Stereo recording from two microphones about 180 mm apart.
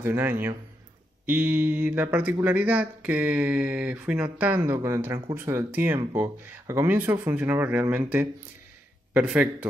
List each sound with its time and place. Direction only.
0.0 s a man's voice: 15° right (ahead or behind)